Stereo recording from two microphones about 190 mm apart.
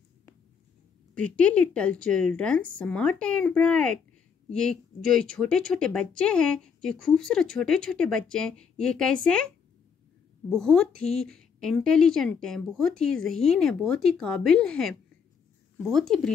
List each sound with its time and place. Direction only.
1.1 s speech: 5° left (ahead or behind)
10.5 s speech: centre (ahead or behind)